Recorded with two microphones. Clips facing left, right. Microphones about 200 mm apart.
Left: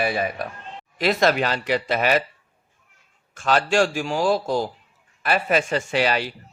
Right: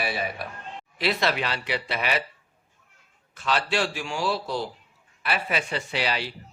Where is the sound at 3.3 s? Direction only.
45° left (ahead or behind).